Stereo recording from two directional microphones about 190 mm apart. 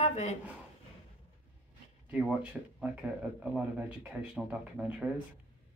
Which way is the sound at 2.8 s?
5° right (ahead or behind).